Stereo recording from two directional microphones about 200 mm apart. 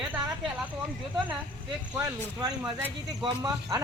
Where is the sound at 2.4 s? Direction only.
20° right (ahead or behind).